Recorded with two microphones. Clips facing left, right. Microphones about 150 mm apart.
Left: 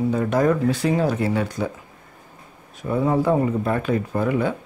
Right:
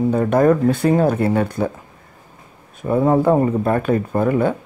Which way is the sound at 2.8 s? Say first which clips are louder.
Right 5 dB; 50° right (ahead or behind).